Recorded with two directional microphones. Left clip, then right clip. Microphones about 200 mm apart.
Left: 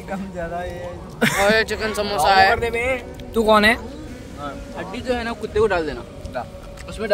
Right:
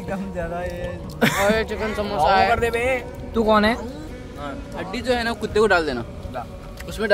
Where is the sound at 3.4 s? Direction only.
40° left (ahead or behind).